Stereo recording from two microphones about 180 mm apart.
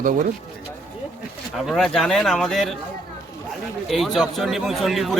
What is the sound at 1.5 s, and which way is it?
A man's voice, centre (ahead or behind).